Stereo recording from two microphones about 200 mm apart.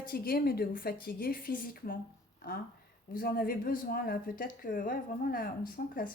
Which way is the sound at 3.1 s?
45° left (ahead or behind).